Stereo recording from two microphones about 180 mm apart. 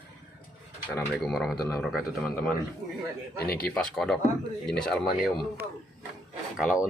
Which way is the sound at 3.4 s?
55° left (ahead or behind).